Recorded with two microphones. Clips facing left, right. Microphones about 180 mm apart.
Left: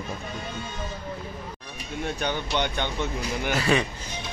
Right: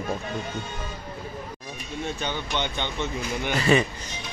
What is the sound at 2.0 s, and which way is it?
Speech, 15° left (ahead or behind).